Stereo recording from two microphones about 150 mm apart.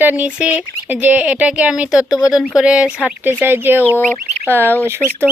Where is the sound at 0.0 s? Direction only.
10° right (ahead or behind).